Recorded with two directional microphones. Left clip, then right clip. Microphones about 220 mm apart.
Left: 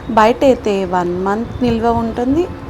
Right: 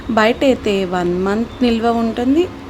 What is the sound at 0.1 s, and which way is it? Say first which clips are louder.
A woman's voice: left 3 dB; 15° right (ahead or behind).